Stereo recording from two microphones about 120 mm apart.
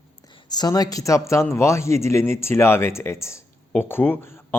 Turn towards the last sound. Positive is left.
turn(degrees=20)  # may be behind; listen again after turning